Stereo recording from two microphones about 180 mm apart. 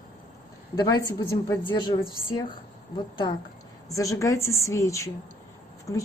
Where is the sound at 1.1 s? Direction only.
20° left (ahead or behind).